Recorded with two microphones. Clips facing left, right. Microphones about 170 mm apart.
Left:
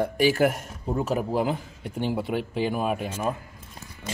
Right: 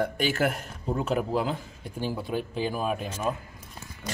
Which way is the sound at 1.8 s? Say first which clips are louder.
Left 5 dB; 65° left (ahead or behind).